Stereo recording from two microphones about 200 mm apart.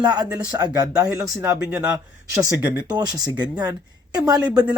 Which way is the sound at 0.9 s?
5° right (ahead or behind).